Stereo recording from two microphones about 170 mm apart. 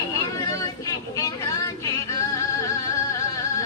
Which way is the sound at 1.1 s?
20° left (ahead or behind).